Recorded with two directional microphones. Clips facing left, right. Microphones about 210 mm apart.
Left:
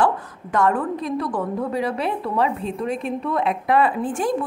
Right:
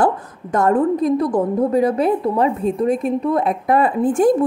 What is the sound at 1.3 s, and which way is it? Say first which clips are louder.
Speech: right 7 dB; 25° right (ahead or behind).